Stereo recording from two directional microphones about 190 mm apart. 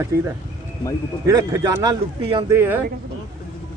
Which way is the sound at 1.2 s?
15° right (ahead or behind).